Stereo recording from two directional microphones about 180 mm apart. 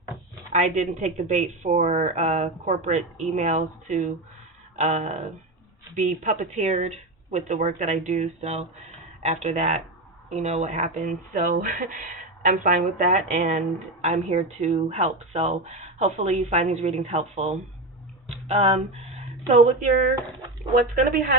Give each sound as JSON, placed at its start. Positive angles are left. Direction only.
{"t": 0.5, "sound": "speech", "side_deg": -40}